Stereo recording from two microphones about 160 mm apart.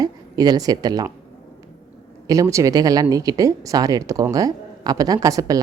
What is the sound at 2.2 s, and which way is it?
Speech, 20° right (ahead or behind).